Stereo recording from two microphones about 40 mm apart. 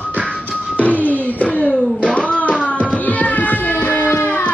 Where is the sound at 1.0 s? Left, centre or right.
Left.